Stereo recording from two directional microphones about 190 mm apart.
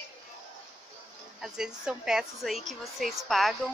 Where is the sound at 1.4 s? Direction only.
5° right (ahead or behind).